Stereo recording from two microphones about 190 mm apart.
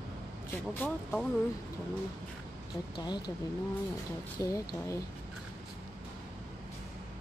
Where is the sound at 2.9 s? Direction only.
25° left (ahead or behind).